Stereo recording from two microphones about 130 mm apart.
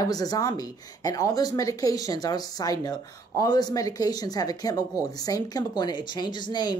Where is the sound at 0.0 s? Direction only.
30° left (ahead or behind).